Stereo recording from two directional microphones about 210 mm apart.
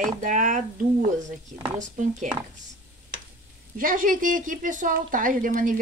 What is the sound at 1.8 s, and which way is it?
Speech, 35° right (ahead or behind).